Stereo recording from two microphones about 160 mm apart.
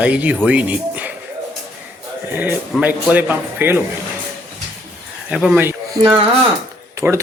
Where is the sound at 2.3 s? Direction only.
10° right (ahead or behind).